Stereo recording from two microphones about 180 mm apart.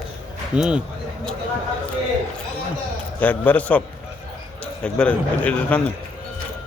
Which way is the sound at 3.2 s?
10° left (ahead or behind).